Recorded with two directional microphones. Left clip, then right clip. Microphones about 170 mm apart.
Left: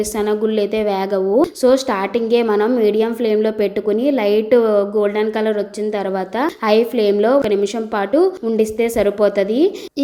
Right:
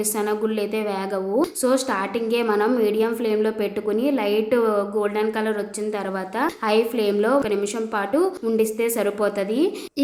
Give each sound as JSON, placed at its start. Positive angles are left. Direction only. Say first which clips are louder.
{"t": 0.0, "sound": "a woman's voice", "louder": "left 5 dB", "side_deg": 30}